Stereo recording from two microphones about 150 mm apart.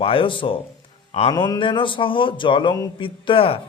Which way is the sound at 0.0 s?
35° left (ahead or behind).